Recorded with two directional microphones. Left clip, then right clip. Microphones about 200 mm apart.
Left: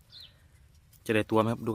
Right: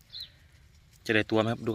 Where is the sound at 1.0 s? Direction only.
20° left (ahead or behind).